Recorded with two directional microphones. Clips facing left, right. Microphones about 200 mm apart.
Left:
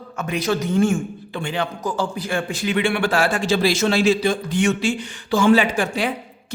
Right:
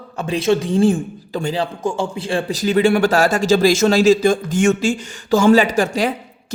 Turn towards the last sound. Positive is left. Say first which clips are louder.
# right 3 dB
turn(degrees=-40)  # may be behind; listen again after turning